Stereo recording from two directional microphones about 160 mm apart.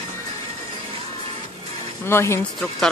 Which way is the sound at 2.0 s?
15° left (ahead or behind).